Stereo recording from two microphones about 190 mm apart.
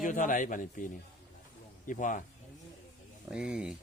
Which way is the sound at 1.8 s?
45° left (ahead or behind).